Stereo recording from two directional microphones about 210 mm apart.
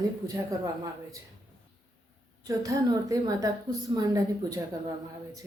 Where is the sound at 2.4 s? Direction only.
15° right (ahead or behind).